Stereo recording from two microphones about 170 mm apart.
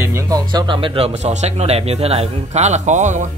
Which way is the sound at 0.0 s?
15° right (ahead or behind).